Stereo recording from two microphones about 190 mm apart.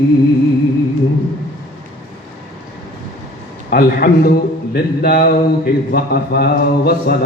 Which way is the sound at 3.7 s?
50° left (ahead or behind).